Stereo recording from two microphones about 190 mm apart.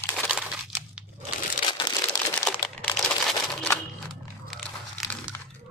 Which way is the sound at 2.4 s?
5° left (ahead or behind).